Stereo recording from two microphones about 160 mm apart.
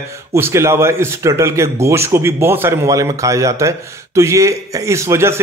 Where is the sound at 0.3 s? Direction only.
15° right (ahead or behind).